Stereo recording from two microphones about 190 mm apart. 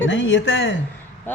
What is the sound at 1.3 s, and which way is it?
Speech, 10° left (ahead or behind).